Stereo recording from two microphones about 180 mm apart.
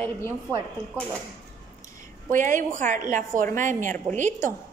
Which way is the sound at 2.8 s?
45° right (ahead or behind).